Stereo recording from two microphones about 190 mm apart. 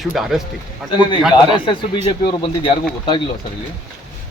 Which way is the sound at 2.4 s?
25° left (ahead or behind).